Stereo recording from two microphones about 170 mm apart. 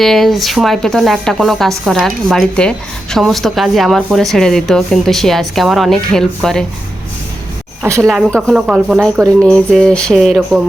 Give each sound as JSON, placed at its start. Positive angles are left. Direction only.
{"t": 0.0, "sound": "a woman's voice", "side_deg": 0}
{"t": 7.8, "sound": "a woman's voice", "side_deg": -15}
{"t": 8.0, "sound": "a woman's voice", "side_deg": 0}